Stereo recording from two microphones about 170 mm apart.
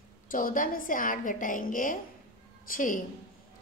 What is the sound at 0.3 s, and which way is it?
A woman's voice, 55° left (ahead or behind).